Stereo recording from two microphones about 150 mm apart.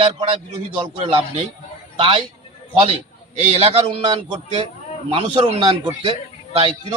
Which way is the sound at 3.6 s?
40° right (ahead or behind).